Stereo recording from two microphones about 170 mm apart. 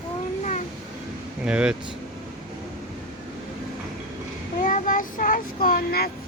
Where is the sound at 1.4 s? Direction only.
5° right (ahead or behind).